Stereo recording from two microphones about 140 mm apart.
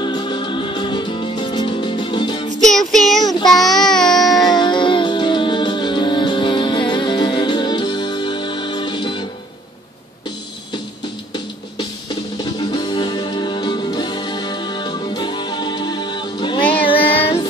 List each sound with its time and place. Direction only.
0.0 s music: 30° left (ahead or behind)
2.6 s child singing: centre (ahead or behind)
3.7 s a sound: 5° left (ahead or behind)
4.1 s music: 30° left (ahead or behind)
12.5 s music: 35° left (ahead or behind)